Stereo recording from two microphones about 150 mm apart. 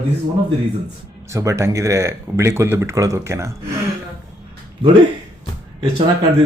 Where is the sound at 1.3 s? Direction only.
20° right (ahead or behind).